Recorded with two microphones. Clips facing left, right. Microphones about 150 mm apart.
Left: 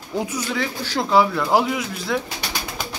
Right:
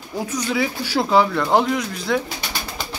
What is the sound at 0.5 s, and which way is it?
A man's voice, 5° right (ahead or behind).